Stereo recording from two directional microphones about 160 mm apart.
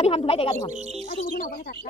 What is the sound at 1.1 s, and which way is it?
Speech, 70° left (ahead or behind).